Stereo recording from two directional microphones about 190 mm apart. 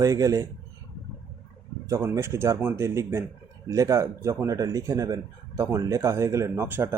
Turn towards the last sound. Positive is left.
turn(degrees=-10)  # may be behind; listen again after turning